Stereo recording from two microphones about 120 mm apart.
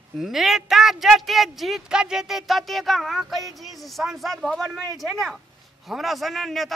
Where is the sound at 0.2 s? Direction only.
5° right (ahead or behind).